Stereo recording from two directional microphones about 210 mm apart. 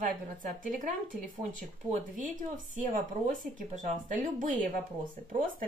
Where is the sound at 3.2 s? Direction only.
35° right (ahead or behind).